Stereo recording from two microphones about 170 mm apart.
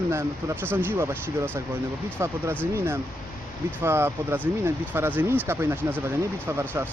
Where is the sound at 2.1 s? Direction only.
15° right (ahead or behind).